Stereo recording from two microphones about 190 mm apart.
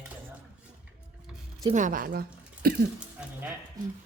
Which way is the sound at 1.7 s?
45° right (ahead or behind).